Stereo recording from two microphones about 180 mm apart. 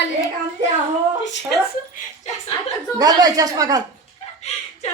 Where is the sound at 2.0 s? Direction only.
40° left (ahead or behind).